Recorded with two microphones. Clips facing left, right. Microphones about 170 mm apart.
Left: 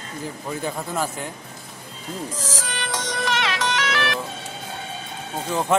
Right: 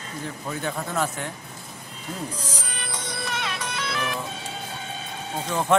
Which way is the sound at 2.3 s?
90° left.